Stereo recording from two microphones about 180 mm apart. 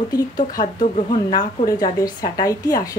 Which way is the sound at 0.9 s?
25° left (ahead or behind).